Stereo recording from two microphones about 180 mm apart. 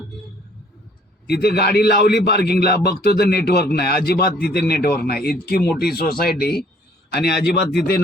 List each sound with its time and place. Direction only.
1.3 s a man's voice: 60° left (ahead or behind)